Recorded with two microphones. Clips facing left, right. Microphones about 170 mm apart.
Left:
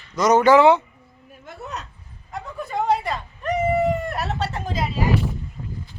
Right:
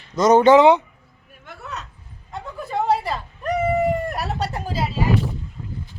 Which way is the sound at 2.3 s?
Centre (ahead or behind).